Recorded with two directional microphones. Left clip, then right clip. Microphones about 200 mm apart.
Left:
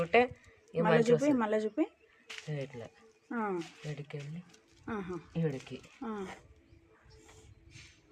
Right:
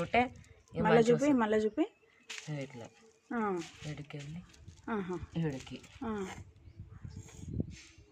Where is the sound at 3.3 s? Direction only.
10° right (ahead or behind).